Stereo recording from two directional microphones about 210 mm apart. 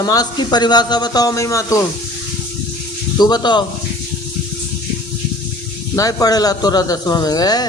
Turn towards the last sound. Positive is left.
turn(degrees=20)  # may be behind; listen again after turning